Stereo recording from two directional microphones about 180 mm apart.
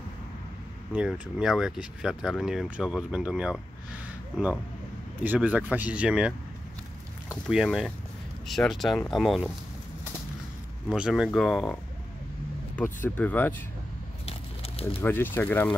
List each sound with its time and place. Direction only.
0.9 s speech: 5° right (ahead or behind)
5.2 s speech: 10° right (ahead or behind)
7.4 s speech: centre (ahead or behind)
10.9 s speech: 5° right (ahead or behind)
14.2 s a sound: 35° left (ahead or behind)
15.0 s speech: 10° left (ahead or behind)